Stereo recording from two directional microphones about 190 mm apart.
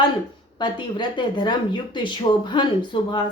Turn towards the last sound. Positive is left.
turn(degrees=25)  # may be behind; listen again after turning